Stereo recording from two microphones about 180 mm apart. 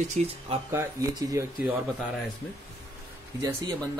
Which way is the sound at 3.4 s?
20° right (ahead or behind).